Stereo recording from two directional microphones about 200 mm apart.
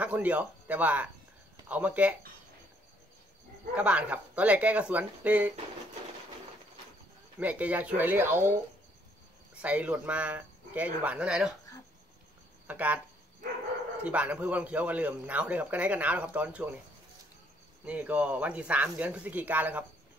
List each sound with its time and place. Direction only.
0.0 s a man's voice: 5° right (ahead or behind)
3.7 s a man's voice: 5° right (ahead or behind)
7.3 s a man's voice: 5° right (ahead or behind)
9.6 s a man's voice: 5° right (ahead or behind)
12.6 s speech: 10° right (ahead or behind)
14.0 s a man's voice: 5° right (ahead or behind)
17.8 s a man's voice: 5° right (ahead or behind)